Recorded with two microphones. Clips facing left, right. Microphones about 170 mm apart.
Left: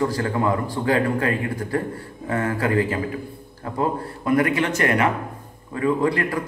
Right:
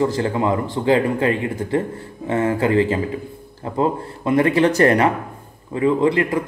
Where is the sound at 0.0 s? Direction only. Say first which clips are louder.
Right 3 dB; 25° right (ahead or behind).